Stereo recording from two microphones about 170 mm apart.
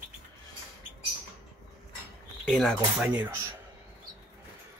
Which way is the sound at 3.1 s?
10° right (ahead or behind).